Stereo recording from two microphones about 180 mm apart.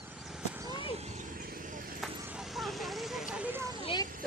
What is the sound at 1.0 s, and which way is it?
Vehicle, 40° right (ahead or behind).